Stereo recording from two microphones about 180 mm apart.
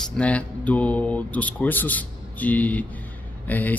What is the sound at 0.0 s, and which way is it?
A man's voice, 5° left (ahead or behind).